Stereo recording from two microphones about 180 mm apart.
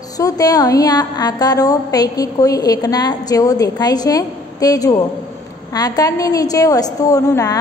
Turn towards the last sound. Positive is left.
turn(degrees=20)  # may be behind; listen again after turning